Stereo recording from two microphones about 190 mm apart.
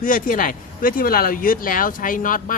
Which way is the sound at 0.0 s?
45° left (ahead or behind).